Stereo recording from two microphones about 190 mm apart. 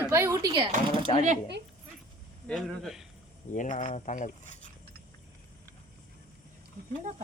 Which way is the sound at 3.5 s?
40° left (ahead or behind).